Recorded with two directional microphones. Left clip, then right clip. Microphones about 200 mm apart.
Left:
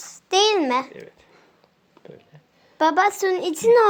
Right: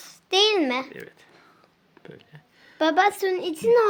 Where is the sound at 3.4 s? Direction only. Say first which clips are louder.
Left 4 dB; 30° left (ahead or behind).